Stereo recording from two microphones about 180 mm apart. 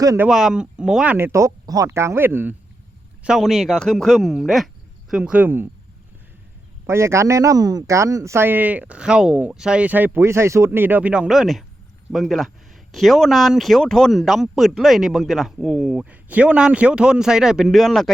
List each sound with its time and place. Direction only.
0.0 s speech: 20° right (ahead or behind)
0.3 s speech: centre (ahead or behind)
6.8 s speech: 15° right (ahead or behind); by 18.1 s centre (ahead or behind)